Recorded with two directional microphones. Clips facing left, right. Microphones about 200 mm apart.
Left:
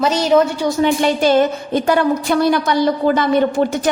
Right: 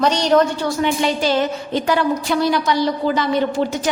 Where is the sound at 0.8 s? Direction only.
50° left (ahead or behind).